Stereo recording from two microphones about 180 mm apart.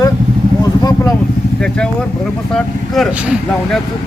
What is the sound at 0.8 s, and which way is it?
Speech, 20° left (ahead or behind).